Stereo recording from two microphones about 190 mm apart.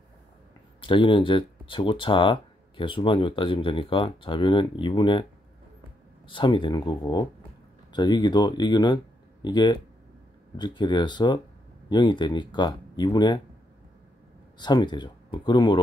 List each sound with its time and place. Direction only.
0.7 s speech: 25° left (ahead or behind)
6.2 s speech: 25° left (ahead or behind)
14.6 s speech: 25° left (ahead or behind)